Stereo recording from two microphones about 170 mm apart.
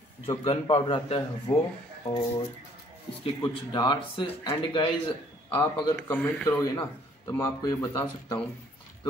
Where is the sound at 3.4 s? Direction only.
25° left (ahead or behind).